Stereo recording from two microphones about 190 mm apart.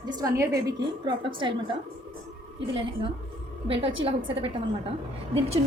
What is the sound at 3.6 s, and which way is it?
A woman's voice, 30° right (ahead or behind).